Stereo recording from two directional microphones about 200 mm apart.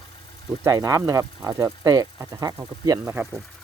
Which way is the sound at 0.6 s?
15° right (ahead or behind).